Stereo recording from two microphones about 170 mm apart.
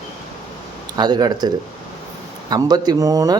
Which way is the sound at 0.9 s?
25° right (ahead or behind).